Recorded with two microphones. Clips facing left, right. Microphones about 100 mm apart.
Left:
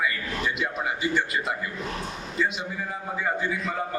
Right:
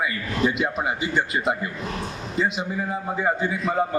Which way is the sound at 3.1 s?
25° right (ahead or behind).